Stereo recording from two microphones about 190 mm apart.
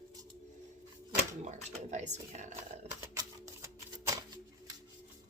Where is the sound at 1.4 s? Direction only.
40° right (ahead or behind).